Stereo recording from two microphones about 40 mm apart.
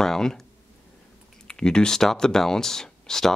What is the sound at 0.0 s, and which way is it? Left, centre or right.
Speech, centre.